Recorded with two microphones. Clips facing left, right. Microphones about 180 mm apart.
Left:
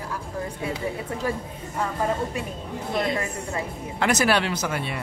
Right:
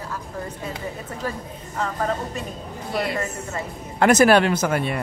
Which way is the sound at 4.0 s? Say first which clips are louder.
Right 7 dB; 50° right (ahead or behind).